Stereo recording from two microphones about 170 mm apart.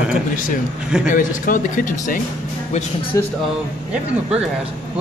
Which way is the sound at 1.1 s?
55° left (ahead or behind).